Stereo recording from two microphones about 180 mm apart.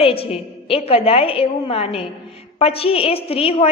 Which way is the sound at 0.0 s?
30° left (ahead or behind).